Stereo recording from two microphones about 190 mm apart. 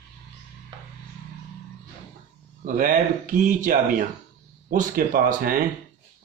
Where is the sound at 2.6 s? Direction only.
45° right (ahead or behind).